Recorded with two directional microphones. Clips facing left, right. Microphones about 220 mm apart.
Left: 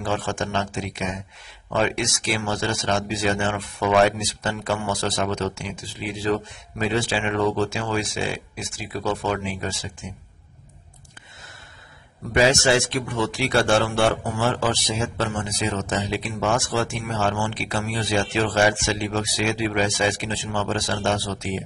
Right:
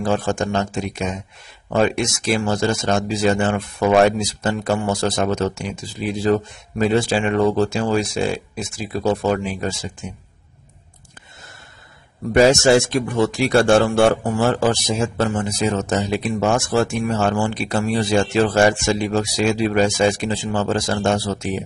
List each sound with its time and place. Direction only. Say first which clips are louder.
0.0 s speech: right 6 dB; 40° right (ahead or behind)
12.4 s a man's voice: right 6 dB; 45° right (ahead or behind)